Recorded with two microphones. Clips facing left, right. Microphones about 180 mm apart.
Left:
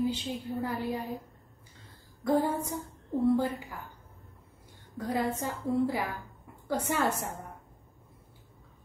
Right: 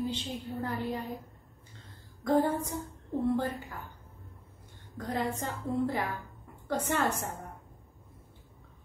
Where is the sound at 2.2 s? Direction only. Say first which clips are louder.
Even; 10° left (ahead or behind).